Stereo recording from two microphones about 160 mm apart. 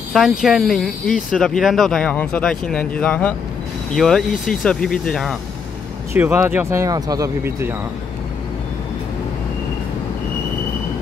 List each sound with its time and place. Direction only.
0.1 s speech: centre (ahead or behind)
6.1 s speech: 15° right (ahead or behind)